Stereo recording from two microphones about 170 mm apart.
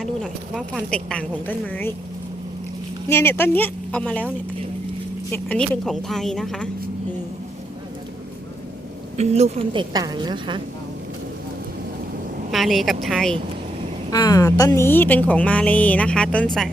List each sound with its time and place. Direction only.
0.0 s a woman's voice: centre (ahead or behind)
3.1 s a woman's voice: 15° left (ahead or behind)
9.1 s a woman's voice: 40° right (ahead or behind)
12.5 s a woman's voice: centre (ahead or behind)
14.1 s a woman's voice: 20° left (ahead or behind); by 16.7 s centre (ahead or behind)